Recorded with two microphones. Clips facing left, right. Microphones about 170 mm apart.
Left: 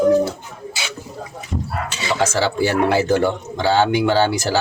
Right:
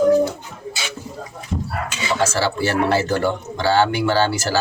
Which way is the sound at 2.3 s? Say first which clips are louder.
Left 2 dB; 15° left (ahead or behind).